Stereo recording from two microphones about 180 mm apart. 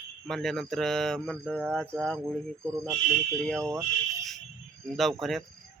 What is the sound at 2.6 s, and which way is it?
Speech, 15° right (ahead or behind).